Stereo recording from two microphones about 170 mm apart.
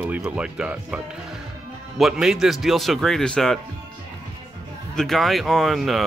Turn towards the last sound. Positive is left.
turn(degrees=0)  # may be behind; listen again after turning